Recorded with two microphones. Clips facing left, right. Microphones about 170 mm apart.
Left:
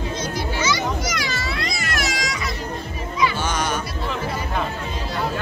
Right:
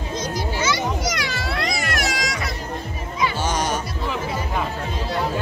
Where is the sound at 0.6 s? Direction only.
60° right (ahead or behind).